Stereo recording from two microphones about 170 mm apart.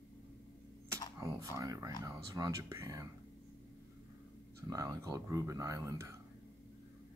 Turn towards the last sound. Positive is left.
turn(degrees=-15)  # may be behind; listen again after turning